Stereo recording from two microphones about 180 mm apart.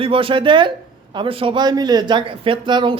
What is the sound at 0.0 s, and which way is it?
A man's voice, 30° right (ahead or behind).